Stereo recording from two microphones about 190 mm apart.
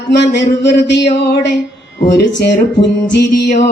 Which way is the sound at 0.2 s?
65° left (ahead or behind).